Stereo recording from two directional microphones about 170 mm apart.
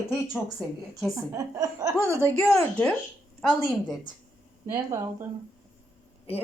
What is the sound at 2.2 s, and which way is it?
Speech, 5° left (ahead or behind).